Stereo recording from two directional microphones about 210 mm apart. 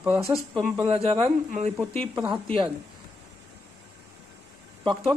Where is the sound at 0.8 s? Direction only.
30° right (ahead or behind).